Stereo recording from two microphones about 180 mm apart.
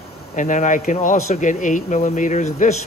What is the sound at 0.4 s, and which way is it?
Speech, 45° left (ahead or behind).